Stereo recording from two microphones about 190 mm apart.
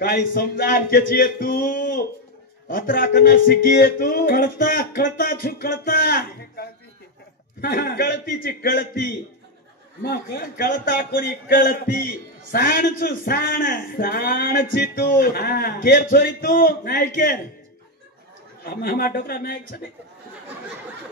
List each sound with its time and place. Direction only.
0.1 s a man's voice: 50° left (ahead or behind)
18.6 s a man's voice: 55° left (ahead or behind)